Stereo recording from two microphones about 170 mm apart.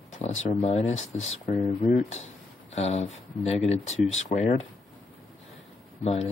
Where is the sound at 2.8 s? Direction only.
40° left (ahead or behind).